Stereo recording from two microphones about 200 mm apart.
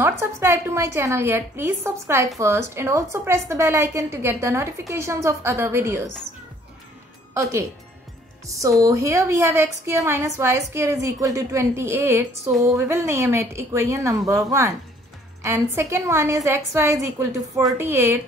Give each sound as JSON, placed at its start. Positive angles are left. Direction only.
{"t": 0.0, "sound": "a woman's voice", "side_deg": -10}
{"t": 8.5, "sound": "a woman's voice", "side_deg": -15}